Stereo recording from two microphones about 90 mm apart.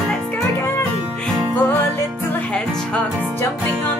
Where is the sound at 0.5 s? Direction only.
25° left (ahead or behind).